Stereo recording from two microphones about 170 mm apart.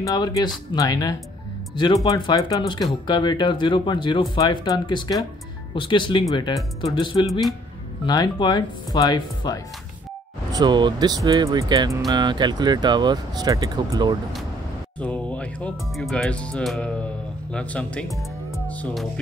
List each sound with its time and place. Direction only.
0.0 s speech: 20° left (ahead or behind)
10.5 s speech: 25° right (ahead or behind)
15.0 s speech: 10° left (ahead or behind)
18.5 s music: 10° left (ahead or behind)